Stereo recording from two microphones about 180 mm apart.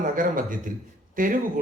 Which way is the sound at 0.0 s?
50° right (ahead or behind).